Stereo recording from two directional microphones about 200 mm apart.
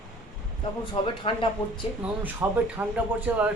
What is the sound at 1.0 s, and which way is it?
Speech, 30° left (ahead or behind).